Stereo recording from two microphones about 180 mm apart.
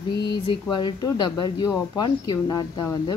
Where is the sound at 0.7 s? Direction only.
25° left (ahead or behind).